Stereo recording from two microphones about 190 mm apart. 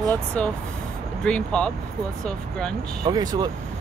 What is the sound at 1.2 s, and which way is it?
Speech, 5° left (ahead or behind).